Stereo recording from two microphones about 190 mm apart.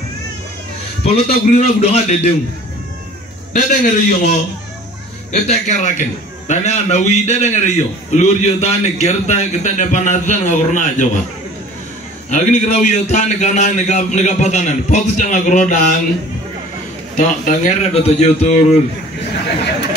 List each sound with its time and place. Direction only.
1.1 s a man's voice: 30° left (ahead or behind)
3.5 s a man's voice: 40° left (ahead or behind)
12.3 s a man's voice: 40° left (ahead or behind)
17.2 s a man's voice: 40° left (ahead or behind)